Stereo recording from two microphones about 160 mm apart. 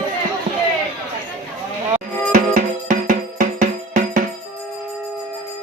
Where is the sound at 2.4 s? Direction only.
60° right (ahead or behind).